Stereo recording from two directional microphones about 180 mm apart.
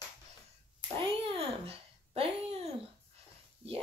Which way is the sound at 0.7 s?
25° right (ahead or behind).